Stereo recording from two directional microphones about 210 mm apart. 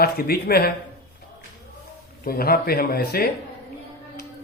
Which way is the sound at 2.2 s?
45° left (ahead or behind).